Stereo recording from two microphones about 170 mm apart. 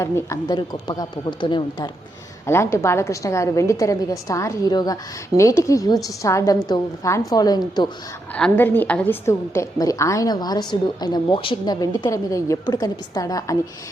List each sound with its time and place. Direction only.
0.0 s a woman's voice: 20° left (ahead or behind)
2.5 s a woman's voice: 15° left (ahead or behind)
8.3 s a woman's voice: 5° left (ahead or behind)